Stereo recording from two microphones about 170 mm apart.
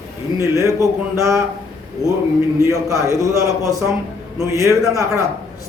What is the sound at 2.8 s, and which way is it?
Speech, 20° right (ahead or behind).